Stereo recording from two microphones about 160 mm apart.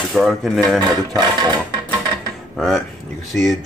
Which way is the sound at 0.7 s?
25° right (ahead or behind).